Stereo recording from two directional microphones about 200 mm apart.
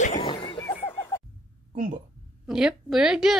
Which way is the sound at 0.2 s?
25° left (ahead or behind).